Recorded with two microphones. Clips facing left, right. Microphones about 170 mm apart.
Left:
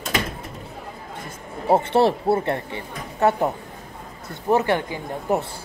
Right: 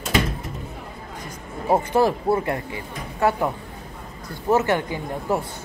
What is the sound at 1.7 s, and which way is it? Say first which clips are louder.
Speech: left 1 dB; 25° left (ahead or behind).